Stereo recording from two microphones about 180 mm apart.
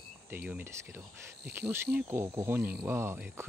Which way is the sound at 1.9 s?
15° right (ahead or behind).